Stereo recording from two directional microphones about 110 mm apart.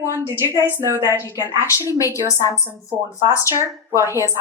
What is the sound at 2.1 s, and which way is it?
Speech, 30° left (ahead or behind).